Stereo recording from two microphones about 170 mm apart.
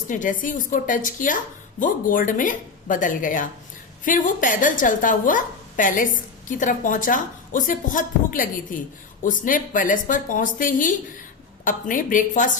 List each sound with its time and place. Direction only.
0.1 s a woman's voice: 50° left (ahead or behind)